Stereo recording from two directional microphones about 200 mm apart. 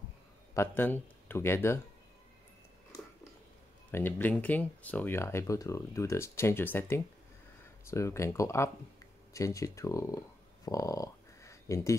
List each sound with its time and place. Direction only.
0.6 s speech: 10° left (ahead or behind)
3.9 s speech: 10° left (ahead or behind)